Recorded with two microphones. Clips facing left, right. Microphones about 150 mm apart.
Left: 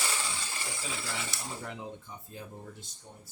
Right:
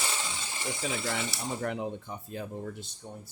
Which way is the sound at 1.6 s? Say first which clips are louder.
Right 8 dB; 60° right (ahead or behind).